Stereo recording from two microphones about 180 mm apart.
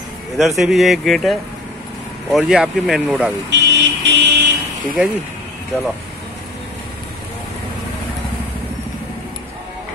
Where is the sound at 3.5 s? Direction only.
80° right.